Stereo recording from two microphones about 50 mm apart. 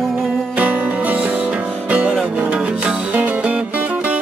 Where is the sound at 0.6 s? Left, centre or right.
Right.